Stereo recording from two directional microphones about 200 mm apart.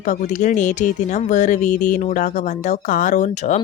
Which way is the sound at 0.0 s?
40° left (ahead or behind).